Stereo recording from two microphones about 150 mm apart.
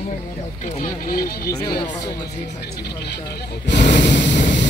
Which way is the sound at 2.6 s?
90° left.